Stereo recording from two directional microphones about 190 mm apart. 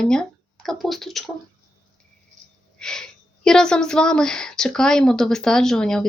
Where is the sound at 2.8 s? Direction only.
5° left (ahead or behind).